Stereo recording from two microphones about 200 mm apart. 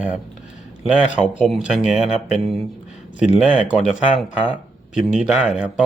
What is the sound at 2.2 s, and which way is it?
Speech, centre (ahead or behind).